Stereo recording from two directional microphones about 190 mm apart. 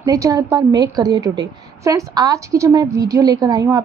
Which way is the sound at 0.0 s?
20° right (ahead or behind).